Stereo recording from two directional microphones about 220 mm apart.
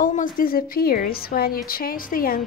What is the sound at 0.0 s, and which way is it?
Speech, 40° left (ahead or behind).